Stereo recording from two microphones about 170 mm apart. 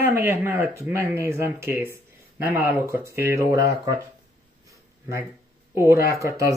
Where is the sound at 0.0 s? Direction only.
10° right (ahead or behind).